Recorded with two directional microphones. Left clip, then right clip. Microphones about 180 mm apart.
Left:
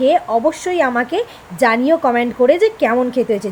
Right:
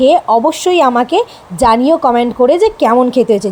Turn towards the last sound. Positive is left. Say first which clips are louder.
# right 6 dB
turn(degrees=-25)  # may be behind; listen again after turning